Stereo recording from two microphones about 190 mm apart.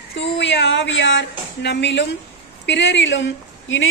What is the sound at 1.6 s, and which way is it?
A woman's voice, 65° left (ahead or behind).